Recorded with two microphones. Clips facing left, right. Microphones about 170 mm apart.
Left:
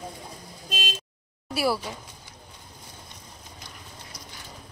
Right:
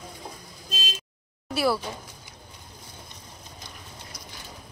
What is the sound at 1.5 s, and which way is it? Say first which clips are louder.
Speech: right 1 dB; 10° left (ahead or behind).